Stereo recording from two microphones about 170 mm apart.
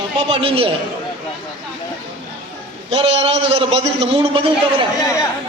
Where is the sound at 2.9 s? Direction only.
35° right (ahead or behind).